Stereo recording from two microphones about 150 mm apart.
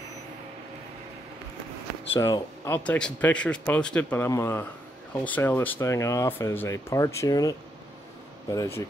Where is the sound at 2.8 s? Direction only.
10° left (ahead or behind).